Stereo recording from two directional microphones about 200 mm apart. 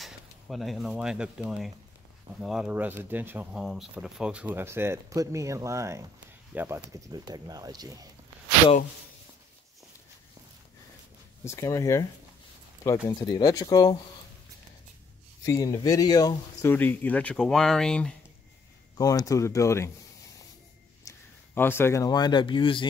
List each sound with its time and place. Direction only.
0.0 s speech: centre (ahead or behind); by 8.1 s 20° right (ahead or behind)
11.4 s speech: 15° left (ahead or behind)
15.4 s speech: 15° left (ahead or behind)
18.9 s speech: 20° left (ahead or behind)
21.1 s a sound: 15° left (ahead or behind)
21.5 s speech: 10° left (ahead or behind)